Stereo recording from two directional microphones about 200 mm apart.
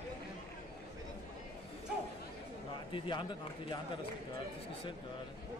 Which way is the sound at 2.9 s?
25° left (ahead or behind).